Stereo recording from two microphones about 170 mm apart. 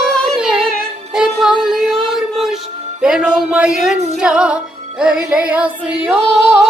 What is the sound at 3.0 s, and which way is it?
Music, 5° right (ahead or behind).